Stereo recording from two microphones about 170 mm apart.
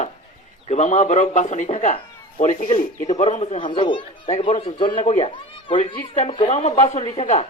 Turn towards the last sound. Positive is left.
turn(degrees=35)  # may be behind; listen again after turning